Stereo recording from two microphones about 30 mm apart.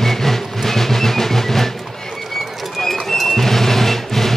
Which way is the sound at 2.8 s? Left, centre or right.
Centre.